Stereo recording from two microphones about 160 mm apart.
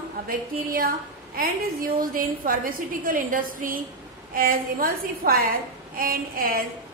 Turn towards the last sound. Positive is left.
turn(degrees=-65)  # may be behind; listen again after turning